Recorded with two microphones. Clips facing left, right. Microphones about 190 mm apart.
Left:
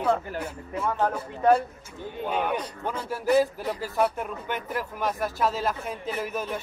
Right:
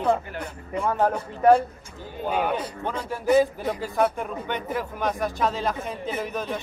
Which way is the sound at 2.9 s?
5° left (ahead or behind).